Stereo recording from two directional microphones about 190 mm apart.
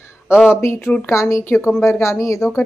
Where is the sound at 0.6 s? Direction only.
15° left (ahead or behind).